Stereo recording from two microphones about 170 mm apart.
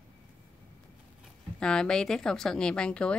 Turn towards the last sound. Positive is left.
turn(degrees=5)  # may be behind; listen again after turning